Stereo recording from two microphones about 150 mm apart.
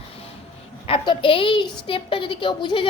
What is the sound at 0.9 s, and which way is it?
A woman's voice, 35° left (ahead or behind).